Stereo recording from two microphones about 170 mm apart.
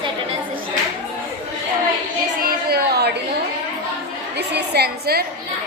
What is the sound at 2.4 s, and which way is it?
Speech, 65° right (ahead or behind).